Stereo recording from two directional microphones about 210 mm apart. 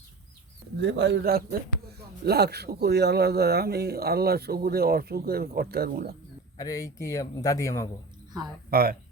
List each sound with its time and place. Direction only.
0.8 s speech: 55° right (ahead or behind)
6.6 s a man's voice: 15° left (ahead or behind)
8.7 s speech: 45° right (ahead or behind)